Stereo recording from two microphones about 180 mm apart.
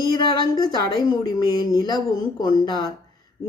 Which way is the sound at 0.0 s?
25° left (ahead or behind).